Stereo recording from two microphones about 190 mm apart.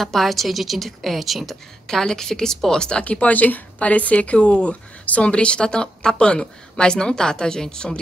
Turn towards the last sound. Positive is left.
turn(degrees=5)  # may be behind; listen again after turning